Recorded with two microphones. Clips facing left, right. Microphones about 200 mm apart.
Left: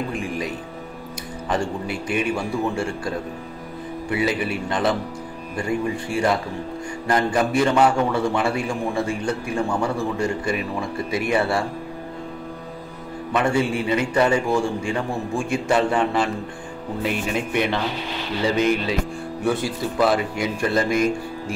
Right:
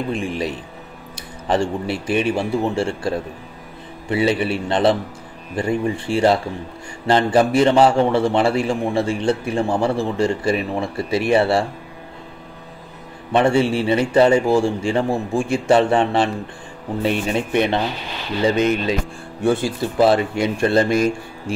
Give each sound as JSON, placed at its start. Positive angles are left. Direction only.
{"t": 0.1, "sound": "a man's voice", "side_deg": -25}
{"t": 1.5, "sound": "a man's voice", "side_deg": -30}
{"t": 4.1, "sound": "a man's voice", "side_deg": -30}
{"t": 13.3, "sound": "a man's voice", "side_deg": -30}